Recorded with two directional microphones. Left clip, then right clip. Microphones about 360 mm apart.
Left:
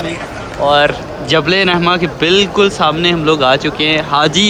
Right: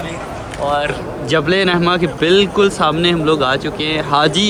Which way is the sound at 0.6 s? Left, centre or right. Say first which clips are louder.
Left 6 dB; left.